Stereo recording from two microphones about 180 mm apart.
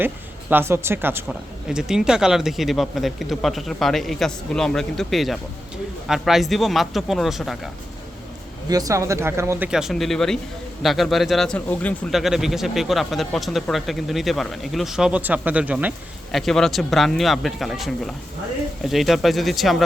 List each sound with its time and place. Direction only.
0.5 s speech: 15° right (ahead or behind)
8.7 s speech: 20° right (ahead or behind)
9.6 s speech: 5° right (ahead or behind)
16.3 s speech: centre (ahead or behind)